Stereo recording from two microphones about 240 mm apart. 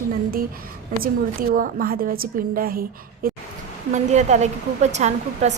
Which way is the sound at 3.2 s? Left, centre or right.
Right.